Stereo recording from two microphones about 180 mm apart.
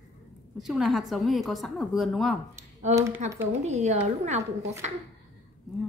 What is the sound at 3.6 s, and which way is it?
A woman's voice, 40° right (ahead or behind).